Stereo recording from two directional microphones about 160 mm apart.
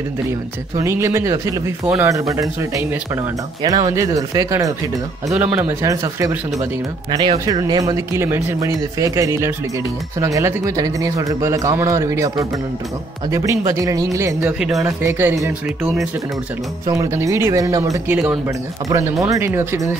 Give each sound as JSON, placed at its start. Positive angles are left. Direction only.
{"t": 0.7, "sound": "speech", "side_deg": -15}
{"t": 3.6, "sound": "speech", "side_deg": -25}
{"t": 5.3, "sound": "speech", "side_deg": -5}
{"t": 18.9, "sound": "speech", "side_deg": -20}